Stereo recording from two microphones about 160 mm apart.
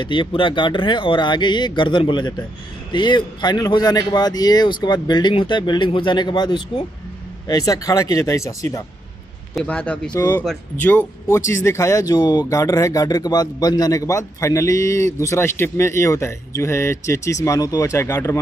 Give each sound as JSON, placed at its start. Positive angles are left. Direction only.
{"t": 0.0, "sound": "speech", "side_deg": 30}
{"t": 9.6, "sound": "speech", "side_deg": 5}